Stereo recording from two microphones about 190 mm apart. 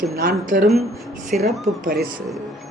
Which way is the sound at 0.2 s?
45° right (ahead or behind).